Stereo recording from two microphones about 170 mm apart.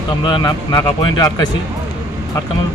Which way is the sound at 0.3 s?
25° left (ahead or behind).